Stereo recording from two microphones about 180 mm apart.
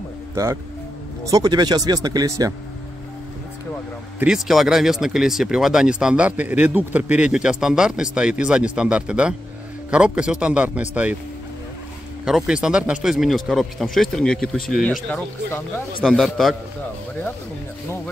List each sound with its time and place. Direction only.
0.3 s speech: 15° right (ahead or behind)
4.2 s speech: 5° right (ahead or behind)
12.3 s speech: 5° right (ahead or behind)
16.0 s speech: centre (ahead or behind)